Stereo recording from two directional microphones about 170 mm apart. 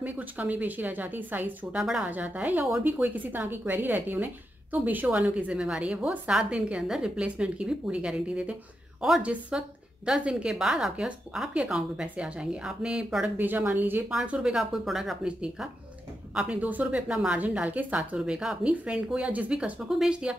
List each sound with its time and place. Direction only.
0.0 s a woman's voice: 10° right (ahead or behind)